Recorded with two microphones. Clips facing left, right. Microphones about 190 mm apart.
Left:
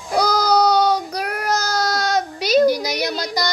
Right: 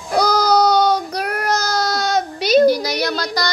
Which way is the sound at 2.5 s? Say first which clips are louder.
Right 3 dB; 15° left (ahead or behind).